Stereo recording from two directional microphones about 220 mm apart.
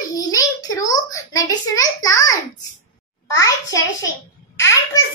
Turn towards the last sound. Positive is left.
turn(degrees=10)  # may be behind; listen again after turning